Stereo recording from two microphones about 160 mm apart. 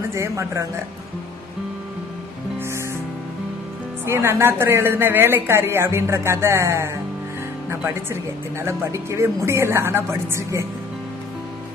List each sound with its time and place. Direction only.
0.1 s a woman's voice: 20° right (ahead or behind)
4.0 s speech: 15° right (ahead or behind)